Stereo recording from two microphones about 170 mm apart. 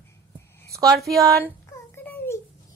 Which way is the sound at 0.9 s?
Centre (ahead or behind).